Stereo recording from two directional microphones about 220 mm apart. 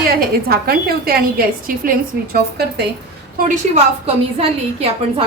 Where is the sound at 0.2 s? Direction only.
45° right (ahead or behind).